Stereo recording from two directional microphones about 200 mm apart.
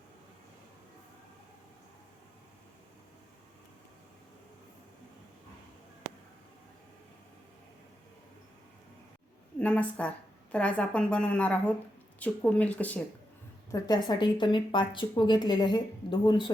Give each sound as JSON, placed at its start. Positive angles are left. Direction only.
{"t": 9.6, "sound": "a woman's voice", "side_deg": 5}
{"t": 13.7, "sound": "speech", "side_deg": 20}